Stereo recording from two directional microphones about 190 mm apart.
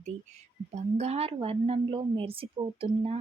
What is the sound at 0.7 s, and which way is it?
A woman's voice, 35° right (ahead or behind).